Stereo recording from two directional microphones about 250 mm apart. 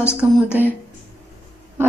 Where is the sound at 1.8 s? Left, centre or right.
Centre.